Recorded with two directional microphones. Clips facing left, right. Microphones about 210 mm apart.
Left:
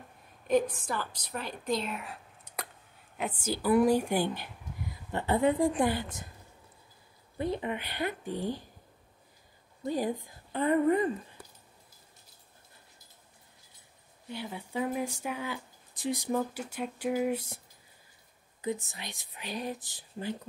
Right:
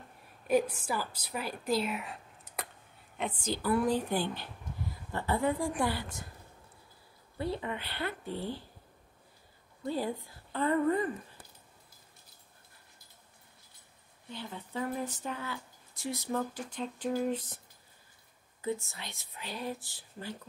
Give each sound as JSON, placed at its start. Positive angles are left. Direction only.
{"t": 0.5, "sound": "a woman's voice", "side_deg": -10}
{"t": 7.3, "sound": "speech", "side_deg": 20}
{"t": 9.8, "sound": "a woman's voice", "side_deg": 15}
{"t": 14.3, "sound": "speech", "side_deg": 10}
{"t": 18.6, "sound": "speech", "side_deg": 15}